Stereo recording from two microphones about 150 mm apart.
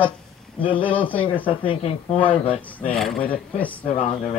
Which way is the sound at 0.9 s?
10° left (ahead or behind).